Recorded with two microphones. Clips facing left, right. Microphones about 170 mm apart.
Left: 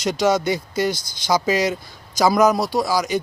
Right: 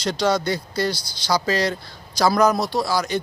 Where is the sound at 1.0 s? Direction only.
50° left (ahead or behind).